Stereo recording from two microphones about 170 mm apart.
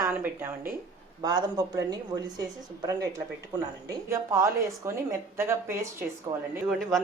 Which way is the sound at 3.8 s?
15° right (ahead or behind).